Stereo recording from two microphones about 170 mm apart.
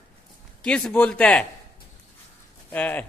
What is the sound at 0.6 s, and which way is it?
Speech, 5° left (ahead or behind).